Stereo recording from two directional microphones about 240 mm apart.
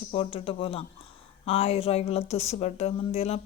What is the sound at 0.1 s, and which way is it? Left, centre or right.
Speech, left.